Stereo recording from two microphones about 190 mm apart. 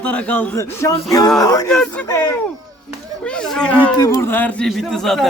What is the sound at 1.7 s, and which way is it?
Speech, 5° left (ahead or behind).